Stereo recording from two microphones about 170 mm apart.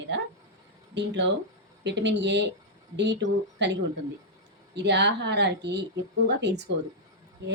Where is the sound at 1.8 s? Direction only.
90° right.